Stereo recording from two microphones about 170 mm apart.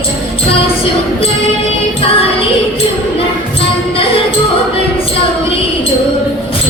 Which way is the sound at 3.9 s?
30° left (ahead or behind).